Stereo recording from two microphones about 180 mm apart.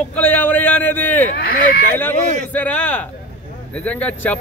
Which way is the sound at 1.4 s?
60° left (ahead or behind).